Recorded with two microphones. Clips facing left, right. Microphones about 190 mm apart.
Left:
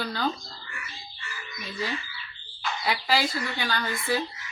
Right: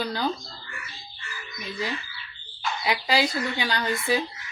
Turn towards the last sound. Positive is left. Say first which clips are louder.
# right 3 dB
turn(degrees=-20)  # may be behind; listen again after turning